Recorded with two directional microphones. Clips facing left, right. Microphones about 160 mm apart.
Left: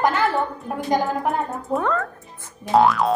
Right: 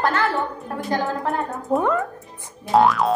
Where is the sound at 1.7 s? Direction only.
15° right (ahead or behind).